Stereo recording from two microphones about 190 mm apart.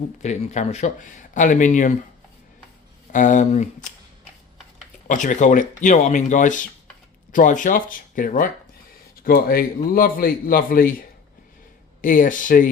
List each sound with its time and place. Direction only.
0.2 s speech: 35° left (ahead or behind)
3.1 s speech: 40° left (ahead or behind)
5.0 s a man's voice: 40° left (ahead or behind)
12.0 s a man's voice: 45° left (ahead or behind)